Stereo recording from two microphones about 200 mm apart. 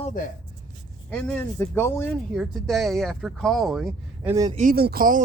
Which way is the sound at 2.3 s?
Centre (ahead or behind).